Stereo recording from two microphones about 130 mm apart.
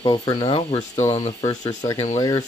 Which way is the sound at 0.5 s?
50° left (ahead or behind).